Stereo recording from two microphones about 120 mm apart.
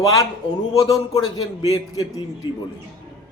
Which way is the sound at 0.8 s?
35° left (ahead or behind).